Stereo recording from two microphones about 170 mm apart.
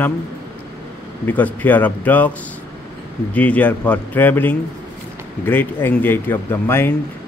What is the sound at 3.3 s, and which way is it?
Speech, 10° left (ahead or behind).